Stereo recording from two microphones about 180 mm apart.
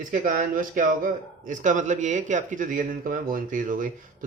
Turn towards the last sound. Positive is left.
turn(degrees=-45)  # may be behind; listen again after turning